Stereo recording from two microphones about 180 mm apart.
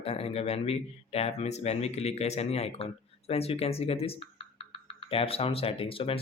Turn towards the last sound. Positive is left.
turn(degrees=30)  # may be behind; listen again after turning